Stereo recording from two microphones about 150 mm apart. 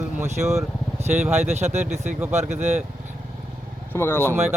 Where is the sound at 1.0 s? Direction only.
50° right (ahead or behind).